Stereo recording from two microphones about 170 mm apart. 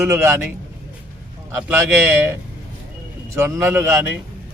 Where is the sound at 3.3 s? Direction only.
15° right (ahead or behind).